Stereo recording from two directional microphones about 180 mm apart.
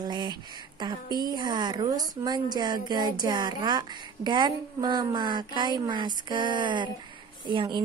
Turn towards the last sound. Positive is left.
turn(degrees=-25)  # may be behind; listen again after turning